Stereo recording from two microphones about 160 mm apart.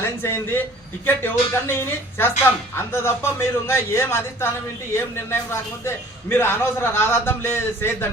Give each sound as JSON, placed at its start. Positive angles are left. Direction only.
{"t": 0.2, "sound": "a man's voice", "side_deg": 15}